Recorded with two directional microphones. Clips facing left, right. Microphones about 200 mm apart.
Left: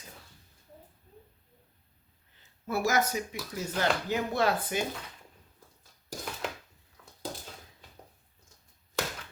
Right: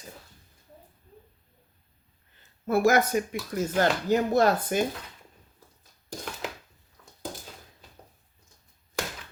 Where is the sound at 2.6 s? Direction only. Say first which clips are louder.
Right 6 dB; 55° right (ahead or behind).